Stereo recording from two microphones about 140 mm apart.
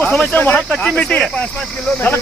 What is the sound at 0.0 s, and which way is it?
Speech, 10° left (ahead or behind).